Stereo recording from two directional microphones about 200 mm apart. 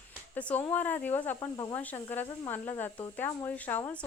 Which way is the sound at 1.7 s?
10° left (ahead or behind).